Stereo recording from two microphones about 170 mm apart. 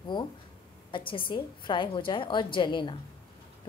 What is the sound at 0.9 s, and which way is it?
A woman's voice, 30° left (ahead or behind).